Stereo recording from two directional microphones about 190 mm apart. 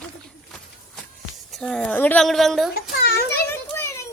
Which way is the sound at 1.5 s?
Centre (ahead or behind).